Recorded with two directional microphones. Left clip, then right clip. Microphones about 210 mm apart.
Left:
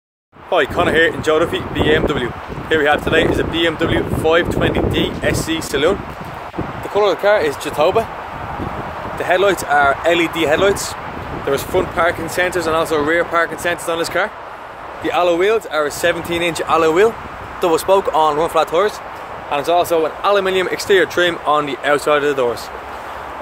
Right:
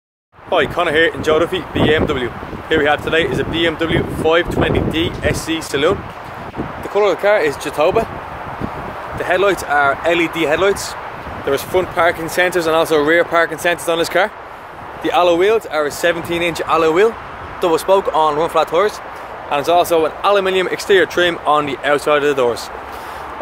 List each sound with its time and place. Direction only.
0.5 s speech: centre (ahead or behind)
9.2 s speech: centre (ahead or behind)
11.5 s speech: 15° right (ahead or behind)